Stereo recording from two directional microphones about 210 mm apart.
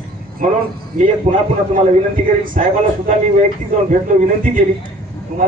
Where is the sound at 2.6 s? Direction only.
35° right (ahead or behind).